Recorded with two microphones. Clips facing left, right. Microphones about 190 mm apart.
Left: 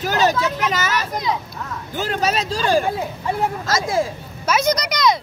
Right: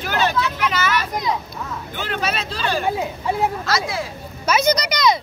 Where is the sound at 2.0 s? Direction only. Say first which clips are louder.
Left 4 dB; 40° left (ahead or behind).